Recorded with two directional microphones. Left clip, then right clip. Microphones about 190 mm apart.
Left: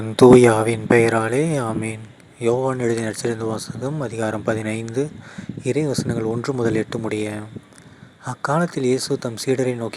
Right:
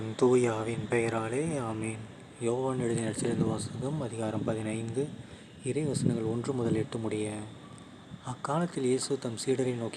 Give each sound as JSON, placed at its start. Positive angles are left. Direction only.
{"t": 0.2, "sound": "speech", "side_deg": 45}